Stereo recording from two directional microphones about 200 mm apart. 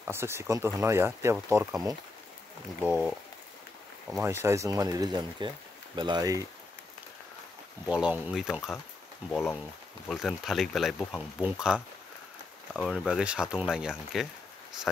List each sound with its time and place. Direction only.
0.0 s speech: 10° right (ahead or behind)
2.8 s speech: centre (ahead or behind)
4.2 s speech: 15° right (ahead or behind)
7.9 s speech: 5° right (ahead or behind)
9.3 s speech: 10° left (ahead or behind)